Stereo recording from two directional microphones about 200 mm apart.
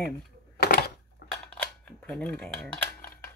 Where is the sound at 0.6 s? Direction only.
50° left (ahead or behind).